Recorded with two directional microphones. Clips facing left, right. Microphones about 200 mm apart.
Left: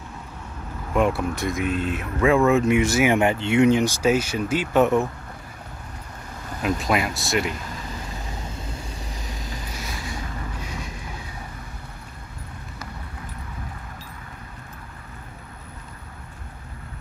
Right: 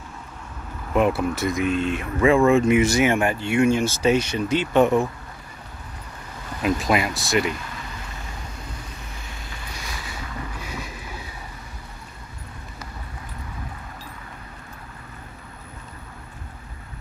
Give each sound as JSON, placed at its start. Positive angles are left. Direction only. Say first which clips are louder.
{"t": 0.9, "sound": "speech", "louder": "right 1 dB", "side_deg": -5}
{"t": 3.1, "sound": "speech", "louder": "left 2 dB", "side_deg": 20}
{"t": 6.6, "sound": "speech", "louder": "right 2 dB", "side_deg": 0}
{"t": 9.3, "sound": "a sound", "louder": "left 4 dB", "side_deg": 40}